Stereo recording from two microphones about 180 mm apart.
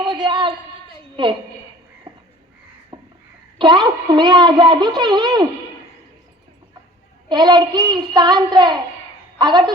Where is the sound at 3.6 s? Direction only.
25° right (ahead or behind).